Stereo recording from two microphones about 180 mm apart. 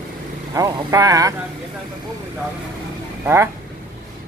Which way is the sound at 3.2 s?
15° right (ahead or behind).